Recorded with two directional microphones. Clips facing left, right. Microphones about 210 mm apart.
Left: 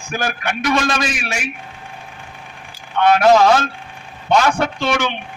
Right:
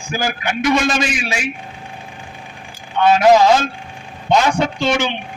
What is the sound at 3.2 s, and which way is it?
A man's voice, 15° right (ahead or behind).